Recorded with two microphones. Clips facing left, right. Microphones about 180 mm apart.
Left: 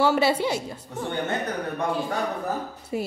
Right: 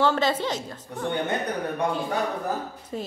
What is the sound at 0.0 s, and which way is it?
Speech, 10° left (ahead or behind).